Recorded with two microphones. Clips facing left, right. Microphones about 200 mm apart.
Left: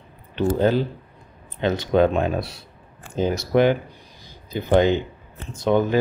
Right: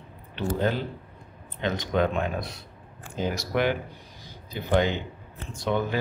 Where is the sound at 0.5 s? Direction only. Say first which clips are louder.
Left 7 dB; 40° left (ahead or behind).